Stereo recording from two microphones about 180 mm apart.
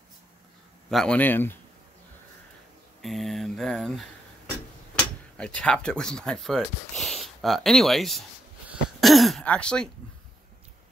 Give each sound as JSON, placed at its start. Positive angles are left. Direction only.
{"t": 0.8, "sound": "a man's voice", "side_deg": 5}
{"t": 3.0, "sound": "speech", "side_deg": 0}
{"t": 8.6, "sound": "throat clearing", "side_deg": 0}